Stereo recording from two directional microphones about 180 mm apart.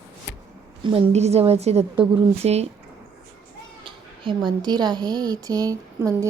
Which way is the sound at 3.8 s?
25° right (ahead or behind).